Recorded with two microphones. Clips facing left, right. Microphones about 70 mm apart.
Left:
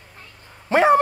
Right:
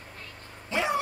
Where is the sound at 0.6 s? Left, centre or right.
Left.